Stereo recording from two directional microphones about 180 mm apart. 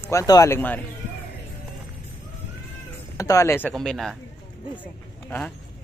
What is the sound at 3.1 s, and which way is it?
Speech, 20° left (ahead or behind).